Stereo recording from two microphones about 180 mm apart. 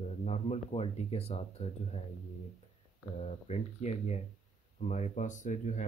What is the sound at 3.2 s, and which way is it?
Speech, 40° left (ahead or behind).